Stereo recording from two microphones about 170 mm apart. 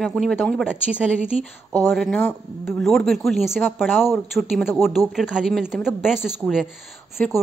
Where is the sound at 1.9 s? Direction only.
5° left (ahead or behind).